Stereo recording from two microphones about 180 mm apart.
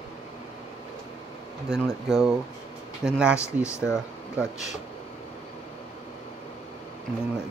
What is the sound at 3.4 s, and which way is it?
Speech, 15° left (ahead or behind).